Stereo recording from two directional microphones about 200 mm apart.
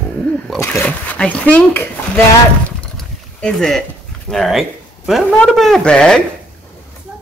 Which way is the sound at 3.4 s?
5° left (ahead or behind).